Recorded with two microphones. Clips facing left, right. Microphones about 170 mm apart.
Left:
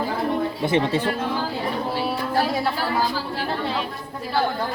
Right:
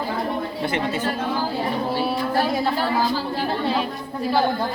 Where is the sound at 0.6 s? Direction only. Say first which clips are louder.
Left 3 dB; 25° left (ahead or behind).